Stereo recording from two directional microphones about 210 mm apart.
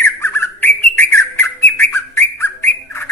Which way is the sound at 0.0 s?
10° left (ahead or behind).